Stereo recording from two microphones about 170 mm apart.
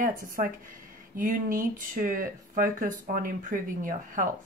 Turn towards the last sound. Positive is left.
turn(degrees=-55)  # may be behind; listen again after turning